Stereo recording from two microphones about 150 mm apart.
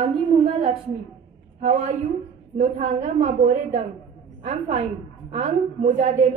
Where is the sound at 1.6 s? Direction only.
55° right (ahead or behind).